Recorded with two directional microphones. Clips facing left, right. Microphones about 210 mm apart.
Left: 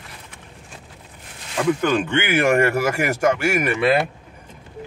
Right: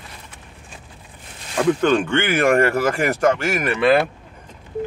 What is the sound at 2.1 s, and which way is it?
Speech, 10° left (ahead or behind).